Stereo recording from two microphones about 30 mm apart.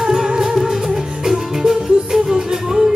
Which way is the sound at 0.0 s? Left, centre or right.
Centre.